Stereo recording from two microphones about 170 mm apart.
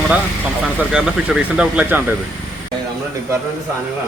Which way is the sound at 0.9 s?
5° right (ahead or behind).